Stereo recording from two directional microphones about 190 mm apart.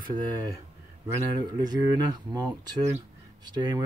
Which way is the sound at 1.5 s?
20° right (ahead or behind).